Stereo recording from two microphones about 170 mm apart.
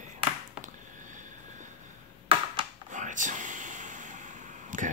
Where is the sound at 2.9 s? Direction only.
45° right (ahead or behind).